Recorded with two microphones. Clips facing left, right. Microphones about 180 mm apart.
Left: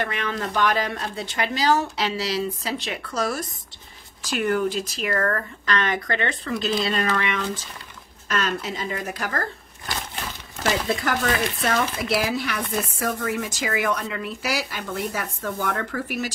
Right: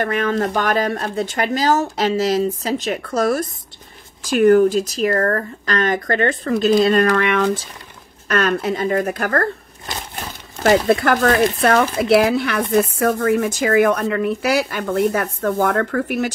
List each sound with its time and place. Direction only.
0.0 s speech: 45° right (ahead or behind)
9.9 s a sound: 20° right (ahead or behind)
10.6 s speech: 60° right (ahead or behind)